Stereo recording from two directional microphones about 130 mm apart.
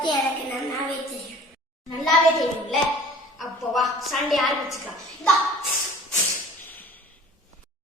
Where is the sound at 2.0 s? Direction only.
Centre (ahead or behind).